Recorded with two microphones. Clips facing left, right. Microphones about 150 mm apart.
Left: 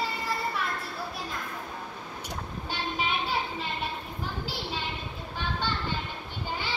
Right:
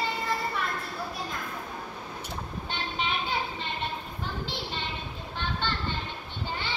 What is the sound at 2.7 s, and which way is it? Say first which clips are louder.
Vehicle: left 1 dB; 5° left (ahead or behind).